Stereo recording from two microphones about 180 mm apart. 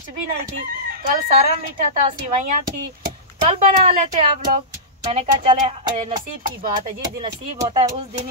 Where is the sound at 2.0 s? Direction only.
35° right (ahead or behind).